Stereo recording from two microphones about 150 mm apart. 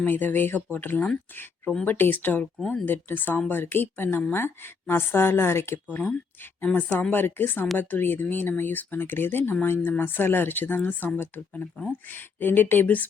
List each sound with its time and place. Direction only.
0.0 s a woman's voice: 10° left (ahead or behind)